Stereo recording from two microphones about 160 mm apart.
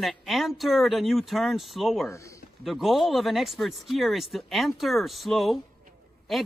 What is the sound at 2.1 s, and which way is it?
Speech, 20° left (ahead or behind).